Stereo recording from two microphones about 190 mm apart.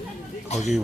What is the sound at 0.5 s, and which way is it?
Speech, 35° left (ahead or behind).